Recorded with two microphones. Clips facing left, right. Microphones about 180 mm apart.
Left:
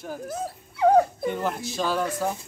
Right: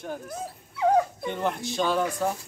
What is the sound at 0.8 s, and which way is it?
Dog, 45° left (ahead or behind).